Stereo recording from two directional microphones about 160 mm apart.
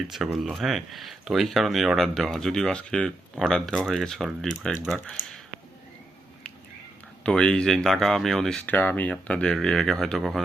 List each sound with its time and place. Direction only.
0.1 s speech: centre (ahead or behind)
7.3 s speech: 5° left (ahead or behind)